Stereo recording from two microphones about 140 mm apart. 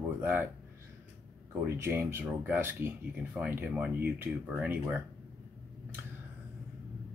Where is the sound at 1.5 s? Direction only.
15° right (ahead or behind).